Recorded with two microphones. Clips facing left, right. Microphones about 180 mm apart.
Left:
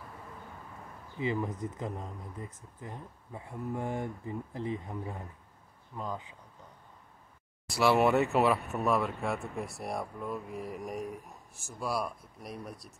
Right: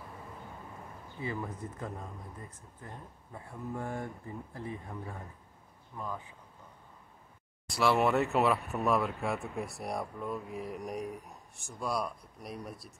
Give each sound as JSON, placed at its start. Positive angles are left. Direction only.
{"t": 1.2, "sound": "speech", "side_deg": 15}
{"t": 3.3, "sound": "speech", "side_deg": 15}
{"t": 7.6, "sound": "speech", "side_deg": 0}